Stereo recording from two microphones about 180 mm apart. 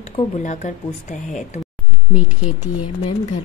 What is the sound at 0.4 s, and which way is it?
Speech, 45° left (ahead or behind).